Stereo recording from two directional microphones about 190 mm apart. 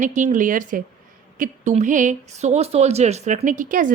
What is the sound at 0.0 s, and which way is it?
A woman's voice, 40° right (ahead or behind).